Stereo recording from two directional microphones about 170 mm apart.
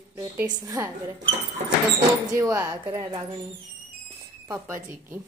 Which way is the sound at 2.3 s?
20° right (ahead or behind).